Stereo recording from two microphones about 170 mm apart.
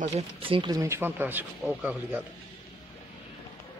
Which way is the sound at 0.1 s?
30° right (ahead or behind).